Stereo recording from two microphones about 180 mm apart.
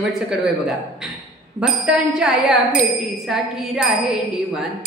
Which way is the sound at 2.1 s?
5° right (ahead or behind).